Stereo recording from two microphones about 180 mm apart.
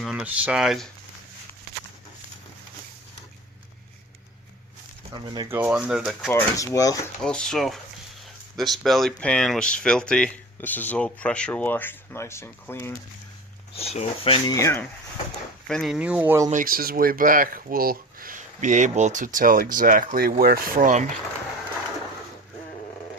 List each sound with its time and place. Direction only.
0.0 s speech: 5° right (ahead or behind)
5.1 s speech: 25° right (ahead or behind)
5.5 s speech: 10° right (ahead or behind)
6.3 s speech: 20° left (ahead or behind)
7.2 s speech: 5° left (ahead or behind)
13.7 s speech: 35° left (ahead or behind)
14.5 s speech: 15° left (ahead or behind)
15.6 s speech: centre (ahead or behind)
16.5 s speech: 50° right (ahead or behind)